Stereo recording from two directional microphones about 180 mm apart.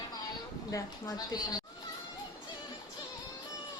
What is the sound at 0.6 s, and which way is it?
Speech, 20° left (ahead or behind).